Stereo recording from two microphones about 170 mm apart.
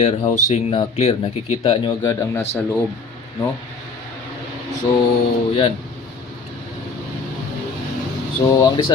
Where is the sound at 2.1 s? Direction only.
15° left (ahead or behind).